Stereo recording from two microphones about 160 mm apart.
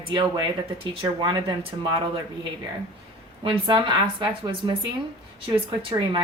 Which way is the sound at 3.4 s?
30° right (ahead or behind).